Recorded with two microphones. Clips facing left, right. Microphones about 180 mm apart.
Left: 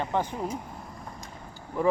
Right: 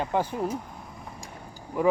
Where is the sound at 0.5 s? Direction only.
5° left (ahead or behind); by 1.9 s 15° right (ahead or behind).